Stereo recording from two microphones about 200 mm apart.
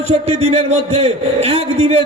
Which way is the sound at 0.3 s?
30° right (ahead or behind).